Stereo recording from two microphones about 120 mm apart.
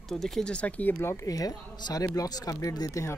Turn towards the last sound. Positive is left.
turn(degrees=30)  # may be behind; listen again after turning